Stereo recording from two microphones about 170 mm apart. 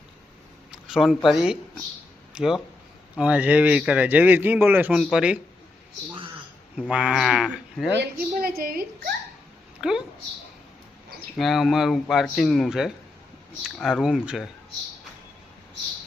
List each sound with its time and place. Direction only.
0.7 s a sound: 5° right (ahead or behind)
1.3 s speech: centre (ahead or behind)
6.7 s speech: 5° right (ahead or behind)
7.9 s a woman's voice: 70° right (ahead or behind)
9.8 s speech: 5° right (ahead or behind)
11.3 s speech: centre (ahead or behind)